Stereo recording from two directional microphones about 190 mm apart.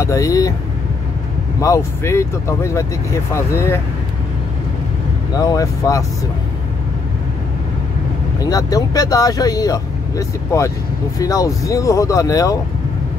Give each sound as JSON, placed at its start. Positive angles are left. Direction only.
{"t": 0.0, "sound": "speech", "side_deg": 15}
{"t": 1.6, "sound": "speech", "side_deg": 15}
{"t": 5.3, "sound": "speech", "side_deg": 20}
{"t": 8.4, "sound": "speech", "side_deg": 20}